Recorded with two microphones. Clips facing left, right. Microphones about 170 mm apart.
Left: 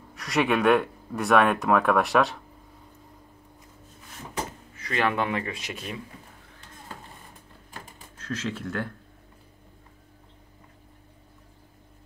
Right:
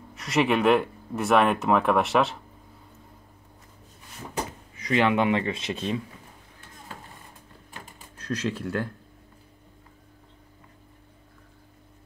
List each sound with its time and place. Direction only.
0.1 s speech: centre (ahead or behind)
4.7 s speech: 15° right (ahead or behind)
8.2 s speech: 15° right (ahead or behind)